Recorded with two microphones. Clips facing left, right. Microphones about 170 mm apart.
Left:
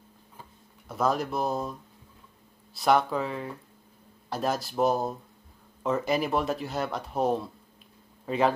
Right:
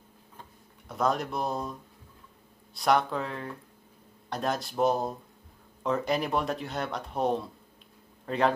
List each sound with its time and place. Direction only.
0.4 s tick-tock: centre (ahead or behind)
2.7 s speech: centre (ahead or behind)